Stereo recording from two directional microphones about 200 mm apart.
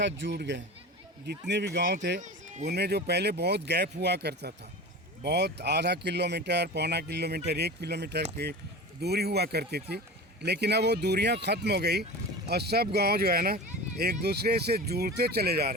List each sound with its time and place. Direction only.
0.0 s speech: 65° right (ahead or behind)
2.2 s music: 35° right (ahead or behind)
2.6 s speech: 55° right (ahead or behind)